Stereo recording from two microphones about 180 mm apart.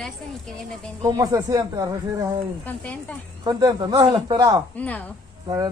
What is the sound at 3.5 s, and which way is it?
Speech, 20° right (ahead or behind).